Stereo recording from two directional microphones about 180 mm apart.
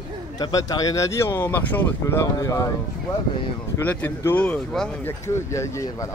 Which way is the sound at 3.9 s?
10° left (ahead or behind).